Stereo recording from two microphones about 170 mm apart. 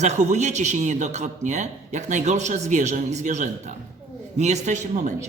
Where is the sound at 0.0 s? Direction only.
45° right (ahead or behind).